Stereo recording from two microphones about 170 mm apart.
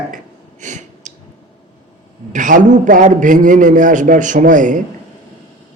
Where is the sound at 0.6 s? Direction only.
45° right (ahead or behind).